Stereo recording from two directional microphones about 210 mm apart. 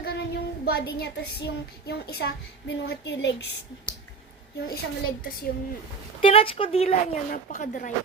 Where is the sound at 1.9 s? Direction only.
50° left (ahead or behind).